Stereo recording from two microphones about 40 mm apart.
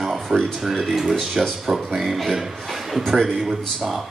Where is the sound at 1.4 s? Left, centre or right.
Centre.